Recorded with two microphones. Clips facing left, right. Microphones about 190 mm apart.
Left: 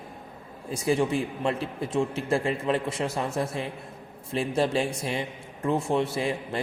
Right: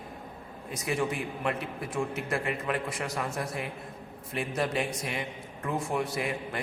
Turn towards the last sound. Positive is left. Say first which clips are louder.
# left 4 dB
turn(degrees=30)  # may be behind; listen again after turning